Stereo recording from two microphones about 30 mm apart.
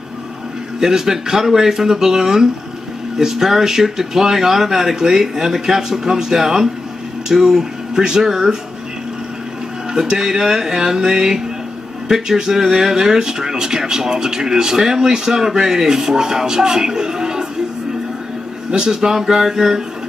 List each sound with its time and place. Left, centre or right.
0.7 s speech: centre
9.9 s speech: centre
18.7 s speech: right
18.9 s speech: centre